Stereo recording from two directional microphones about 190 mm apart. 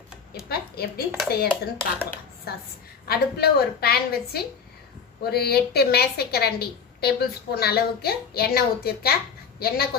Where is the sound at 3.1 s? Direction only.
55° left (ahead or behind).